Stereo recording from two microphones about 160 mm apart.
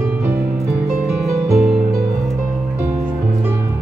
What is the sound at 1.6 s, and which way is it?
Music, centre (ahead or behind).